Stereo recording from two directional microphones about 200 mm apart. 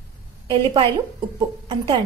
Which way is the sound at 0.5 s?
25° right (ahead or behind).